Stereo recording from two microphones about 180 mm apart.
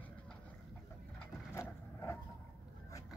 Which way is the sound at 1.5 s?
15° left (ahead or behind).